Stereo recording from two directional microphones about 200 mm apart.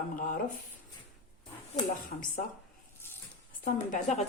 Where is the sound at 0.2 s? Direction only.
45° left (ahead or behind).